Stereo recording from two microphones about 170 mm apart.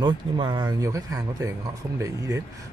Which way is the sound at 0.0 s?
25° right (ahead or behind).